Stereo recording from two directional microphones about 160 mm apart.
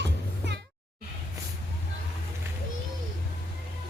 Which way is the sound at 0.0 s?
90° right.